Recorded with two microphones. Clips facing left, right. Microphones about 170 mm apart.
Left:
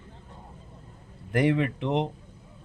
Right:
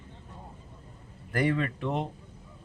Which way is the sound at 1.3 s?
20° left (ahead or behind).